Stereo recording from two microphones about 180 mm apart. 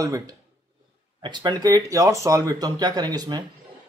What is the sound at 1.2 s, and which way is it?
A man's voice, 25° right (ahead or behind).